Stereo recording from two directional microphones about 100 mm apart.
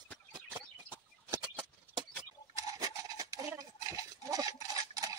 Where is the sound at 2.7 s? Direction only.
35° right (ahead or behind).